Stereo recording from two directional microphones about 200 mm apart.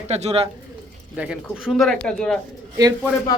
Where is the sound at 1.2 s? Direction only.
5° right (ahead or behind).